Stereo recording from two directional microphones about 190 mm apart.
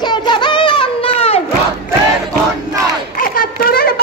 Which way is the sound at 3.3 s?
50° left (ahead or behind).